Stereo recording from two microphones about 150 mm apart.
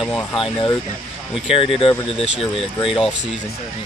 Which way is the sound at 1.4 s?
40° left (ahead or behind).